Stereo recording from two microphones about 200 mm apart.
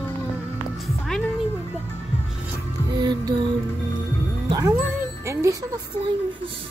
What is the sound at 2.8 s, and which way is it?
Music, 20° right (ahead or behind).